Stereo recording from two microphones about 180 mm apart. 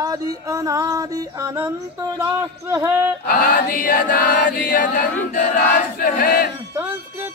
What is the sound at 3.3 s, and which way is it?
Chant, 50° left (ahead or behind).